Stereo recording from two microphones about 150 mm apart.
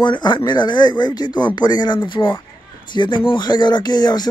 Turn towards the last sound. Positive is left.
turn(degrees=30)  # may be behind; listen again after turning